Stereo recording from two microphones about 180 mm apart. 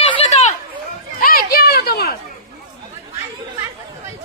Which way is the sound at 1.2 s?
55° left (ahead or behind).